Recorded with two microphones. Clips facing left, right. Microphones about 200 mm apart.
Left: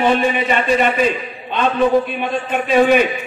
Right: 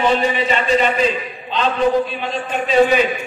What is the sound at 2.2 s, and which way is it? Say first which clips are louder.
Speech: left 2 dB; 55° left (ahead or behind).